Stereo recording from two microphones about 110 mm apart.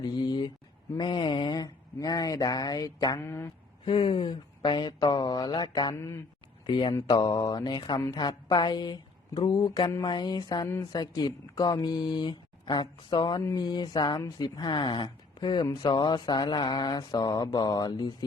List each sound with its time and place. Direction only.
0.0 s a sound: 40° left (ahead or behind)
0.9 s speech: 45° left (ahead or behind)
3.2 s speech: 25° left (ahead or behind)
3.8 s a woman's voice: 50° left (ahead or behind)